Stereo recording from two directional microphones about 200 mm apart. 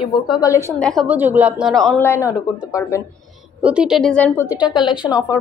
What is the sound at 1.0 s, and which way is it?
A woman's voice, 10° right (ahead or behind).